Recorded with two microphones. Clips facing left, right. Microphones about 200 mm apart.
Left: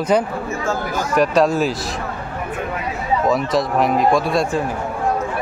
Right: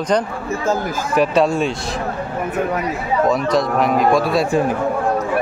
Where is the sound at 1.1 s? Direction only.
Centre (ahead or behind).